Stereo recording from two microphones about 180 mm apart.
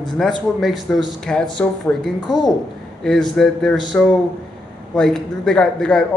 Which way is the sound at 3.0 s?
5° left (ahead or behind).